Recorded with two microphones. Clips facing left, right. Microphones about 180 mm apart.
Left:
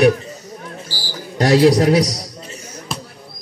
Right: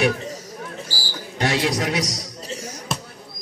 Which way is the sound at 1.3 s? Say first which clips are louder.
Left 10 dB; 40° left (ahead or behind).